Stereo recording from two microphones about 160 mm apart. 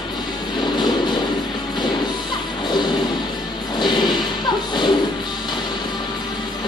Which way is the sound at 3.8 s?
25° left (ahead or behind).